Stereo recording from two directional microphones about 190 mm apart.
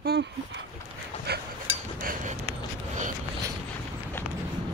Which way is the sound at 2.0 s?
50° right (ahead or behind).